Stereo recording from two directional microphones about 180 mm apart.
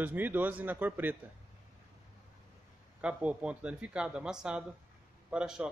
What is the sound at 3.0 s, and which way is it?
Speech, 5° right (ahead or behind).